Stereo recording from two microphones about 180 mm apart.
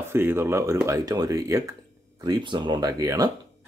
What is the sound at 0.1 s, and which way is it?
Speech, 15° right (ahead or behind).